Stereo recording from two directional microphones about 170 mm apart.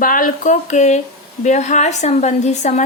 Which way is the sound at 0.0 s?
55° left (ahead or behind).